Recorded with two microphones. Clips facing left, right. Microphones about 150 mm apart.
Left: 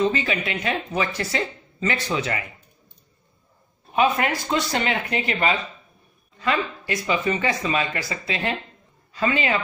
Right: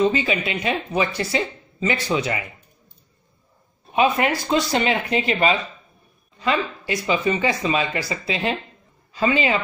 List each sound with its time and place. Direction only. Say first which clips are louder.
0.0 s speech: right 3 dB; 15° right (ahead or behind)
3.9 s a woman's voice: right 2 dB; 20° right (ahead or behind)